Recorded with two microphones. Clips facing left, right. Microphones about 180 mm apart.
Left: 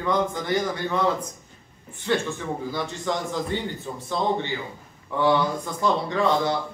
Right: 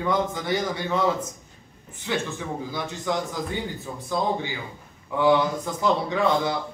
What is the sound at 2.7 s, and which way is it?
Speech, 10° right (ahead or behind).